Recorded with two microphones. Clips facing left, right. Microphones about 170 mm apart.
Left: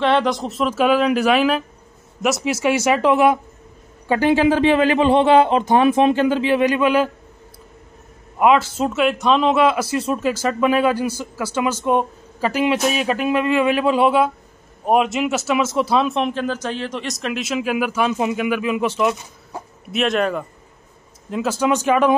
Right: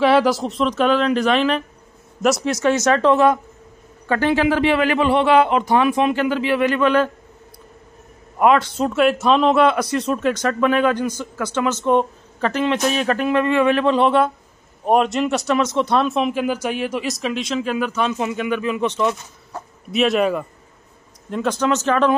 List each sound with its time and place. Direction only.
0.0 s a man's voice: 5° right (ahead or behind)
8.4 s a man's voice: 5° left (ahead or behind)